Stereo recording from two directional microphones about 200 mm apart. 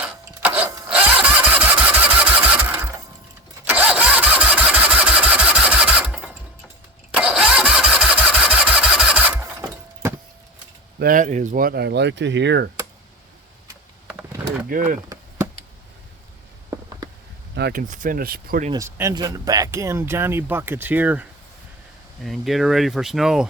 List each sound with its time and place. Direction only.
0.0 s engine starting: 10° right (ahead or behind)
3.6 s engine starting: 10° right (ahead or behind)
11.0 s speech: 40° right (ahead or behind); by 12.6 s 60° right (ahead or behind)
14.1 s a sound: 5° right (ahead or behind)
14.7 s speech: 40° right (ahead or behind)
17.5 s speech: 50° right (ahead or behind)
18.7 s speech: 15° right (ahead or behind)